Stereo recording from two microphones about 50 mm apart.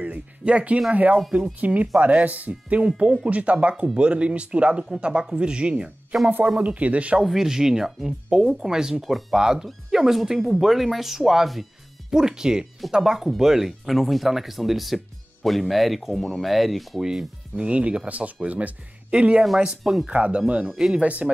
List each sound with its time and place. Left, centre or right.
0.0 s speech: right
6.1 s speech: centre
6.6 s speech: right
7.2 s speech: centre
17.0 s speech: centre
17.6 s speech: right
19.8 s speech: centre
20.1 s speech: right